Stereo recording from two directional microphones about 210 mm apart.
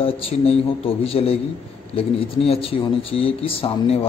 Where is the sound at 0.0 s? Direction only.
25° left (ahead or behind).